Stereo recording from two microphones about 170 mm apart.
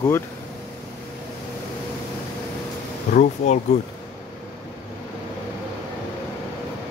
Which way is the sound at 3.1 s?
45° left (ahead or behind).